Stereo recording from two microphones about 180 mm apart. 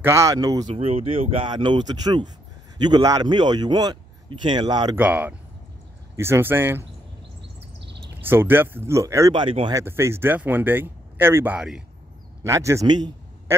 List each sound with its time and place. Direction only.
0.0 s speech: 15° right (ahead or behind)
0.7 s speech: 30° right (ahead or behind)
4.9 s speech: 10° right (ahead or behind)
8.2 s speech: 10° right (ahead or behind); by 9.8 s 30° right (ahead or behind)
9.8 s speech: 15° right (ahead or behind)
12.4 s a man's voice: 15° right (ahead or behind)